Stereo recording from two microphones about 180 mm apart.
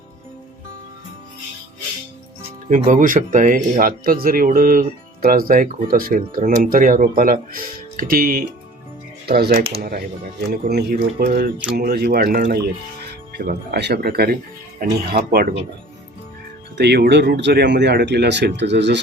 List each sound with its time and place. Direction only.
2.6 s speech: 45° right (ahead or behind)
11.5 s speech: 5° right (ahead or behind)
11.8 s speech: 60° right (ahead or behind)
16.7 s speech: 65° right (ahead or behind)